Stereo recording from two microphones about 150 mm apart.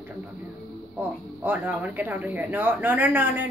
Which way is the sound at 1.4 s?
10° right (ahead or behind).